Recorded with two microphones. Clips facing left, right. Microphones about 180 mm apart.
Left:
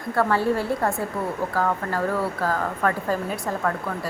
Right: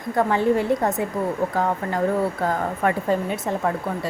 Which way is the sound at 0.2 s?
20° right (ahead or behind).